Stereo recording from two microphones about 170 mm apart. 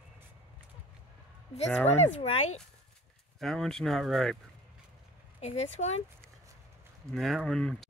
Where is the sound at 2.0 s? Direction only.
35° left (ahead or behind).